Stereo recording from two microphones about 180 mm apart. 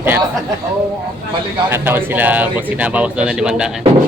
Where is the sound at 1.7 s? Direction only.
10° right (ahead or behind).